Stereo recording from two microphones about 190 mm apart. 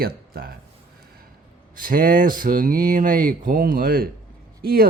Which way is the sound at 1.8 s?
45° right (ahead or behind).